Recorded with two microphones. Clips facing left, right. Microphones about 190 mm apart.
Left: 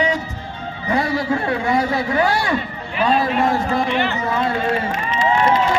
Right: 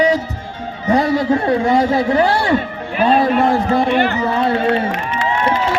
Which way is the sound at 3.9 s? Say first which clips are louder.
Right 4 dB; 55° right (ahead or behind).